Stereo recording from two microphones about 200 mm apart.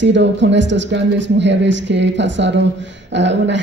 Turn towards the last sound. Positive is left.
turn(degrees=-65)  # may be behind; listen again after turning